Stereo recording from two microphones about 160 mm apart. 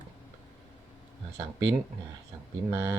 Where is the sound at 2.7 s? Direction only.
15° right (ahead or behind).